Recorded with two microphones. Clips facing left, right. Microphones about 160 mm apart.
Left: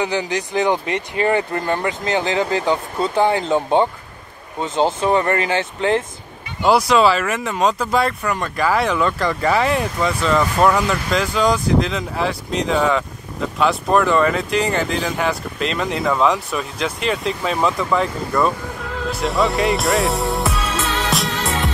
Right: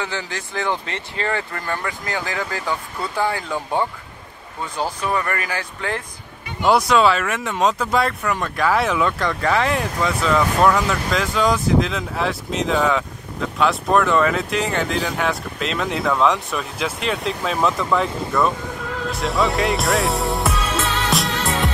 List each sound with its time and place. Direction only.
0.0 s speech: 15° left (ahead or behind)
6.6 s speech: centre (ahead or behind)
19.0 s music: centre (ahead or behind)